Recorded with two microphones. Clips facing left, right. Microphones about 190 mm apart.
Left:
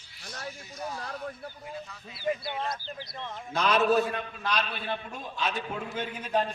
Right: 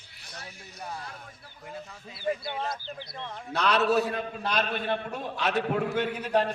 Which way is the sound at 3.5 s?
70° right (ahead or behind).